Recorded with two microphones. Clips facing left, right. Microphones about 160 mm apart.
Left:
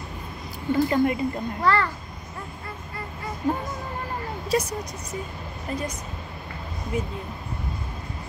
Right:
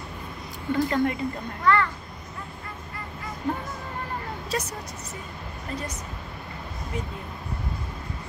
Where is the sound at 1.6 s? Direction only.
35° left (ahead or behind).